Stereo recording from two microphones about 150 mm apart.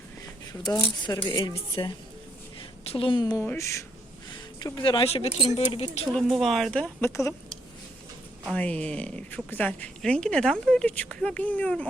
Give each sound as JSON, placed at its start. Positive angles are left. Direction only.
{"t": 0.6, "sound": "speech", "side_deg": 30}
{"t": 2.6, "sound": "a sound", "side_deg": 40}
{"t": 3.4, "sound": "speech", "side_deg": 15}
{"t": 4.6, "sound": "speech", "side_deg": 35}
{"t": 6.1, "sound": "speech", "side_deg": 0}
{"t": 8.5, "sound": "speech", "side_deg": 10}